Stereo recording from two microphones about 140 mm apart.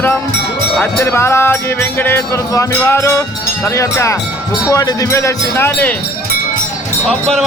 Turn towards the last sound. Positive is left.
turn(degrees=0)  # may be behind; listen again after turning